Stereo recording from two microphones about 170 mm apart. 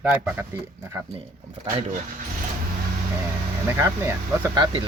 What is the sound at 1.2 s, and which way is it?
Speech, 35° right (ahead or behind).